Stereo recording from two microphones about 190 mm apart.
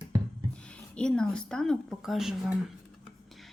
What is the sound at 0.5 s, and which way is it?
Speech, 5° left (ahead or behind).